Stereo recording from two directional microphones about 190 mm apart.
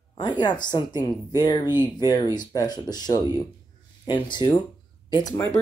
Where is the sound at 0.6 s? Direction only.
20° left (ahead or behind).